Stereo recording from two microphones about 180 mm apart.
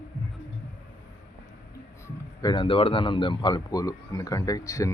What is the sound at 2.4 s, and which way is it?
A man's voice, 25° left (ahead or behind).